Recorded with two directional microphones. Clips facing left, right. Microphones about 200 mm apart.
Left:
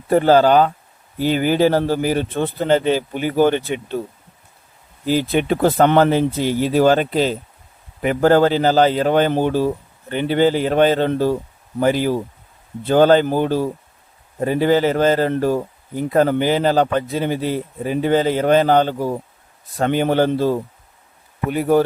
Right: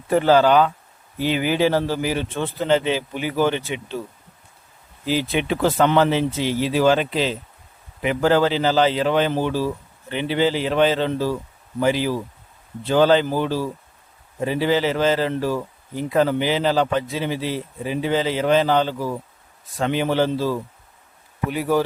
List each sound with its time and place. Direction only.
0.1 s speech: 45° left (ahead or behind)
5.0 s speech: 45° left (ahead or behind)
18.9 s speech: 25° left (ahead or behind)
19.7 s speech: 45° left (ahead or behind)